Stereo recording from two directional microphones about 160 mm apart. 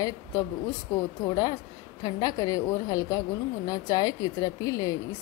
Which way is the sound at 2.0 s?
25° left (ahead or behind).